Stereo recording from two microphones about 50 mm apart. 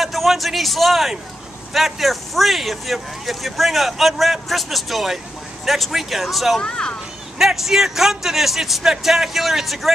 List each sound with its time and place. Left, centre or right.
0.0 s speech: centre
6.6 s speech: centre
7.3 s speech: centre